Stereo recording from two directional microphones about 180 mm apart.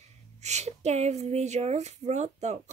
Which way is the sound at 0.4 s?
40° right (ahead or behind).